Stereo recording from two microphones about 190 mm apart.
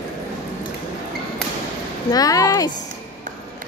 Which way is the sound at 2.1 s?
20° left (ahead or behind).